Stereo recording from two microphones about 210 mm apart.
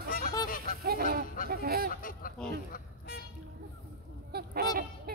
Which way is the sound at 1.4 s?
45° right (ahead or behind).